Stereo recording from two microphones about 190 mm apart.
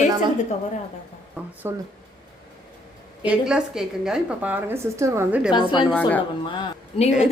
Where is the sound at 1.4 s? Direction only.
10° right (ahead or behind).